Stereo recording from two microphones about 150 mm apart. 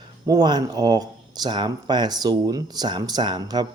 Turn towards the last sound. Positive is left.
turn(degrees=-30)  # may be behind; listen again after turning